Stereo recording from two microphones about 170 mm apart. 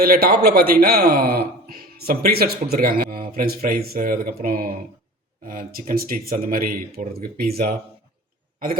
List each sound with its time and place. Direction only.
0.0 s speech: 60° right (ahead or behind)